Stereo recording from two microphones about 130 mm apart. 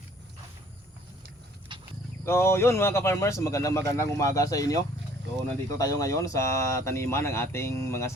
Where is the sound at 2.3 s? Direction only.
20° left (ahead or behind).